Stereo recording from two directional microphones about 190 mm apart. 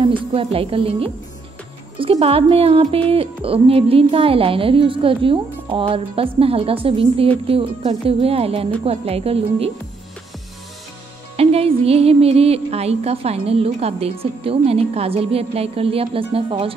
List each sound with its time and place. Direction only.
0.3 s speech: 30° right (ahead or behind)
11.3 s speech: 30° right (ahead or behind)